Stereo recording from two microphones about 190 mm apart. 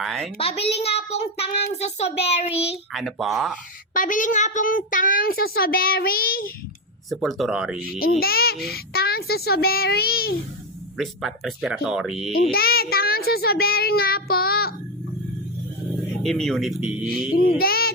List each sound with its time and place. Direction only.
0.0 s speech: centre (ahead or behind)
0.3 s child singing: 30° left (ahead or behind)
2.9 s speech: centre (ahead or behind)
3.9 s child singing: 45° left (ahead or behind)
7.1 s speech: centre (ahead or behind)
8.2 s child singing: 55° left (ahead or behind)
10.9 s speech: centre (ahead or behind)
12.5 s child singing: 55° left (ahead or behind)
16.2 s speech: 5° left (ahead or behind)
17.6 s a child's voice: 55° left (ahead or behind)